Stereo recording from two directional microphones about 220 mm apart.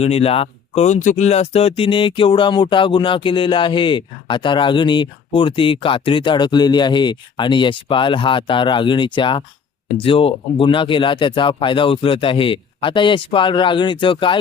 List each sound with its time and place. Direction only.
0.0 s speech: 25° left (ahead or behind)